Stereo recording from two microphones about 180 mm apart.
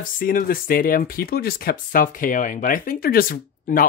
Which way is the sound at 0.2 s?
50° left (ahead or behind).